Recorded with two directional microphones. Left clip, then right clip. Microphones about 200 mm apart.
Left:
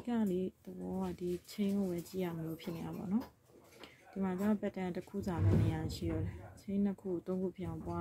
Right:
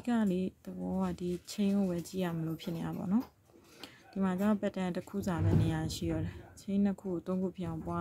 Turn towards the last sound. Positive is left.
turn(degrees=-20)  # may be behind; listen again after turning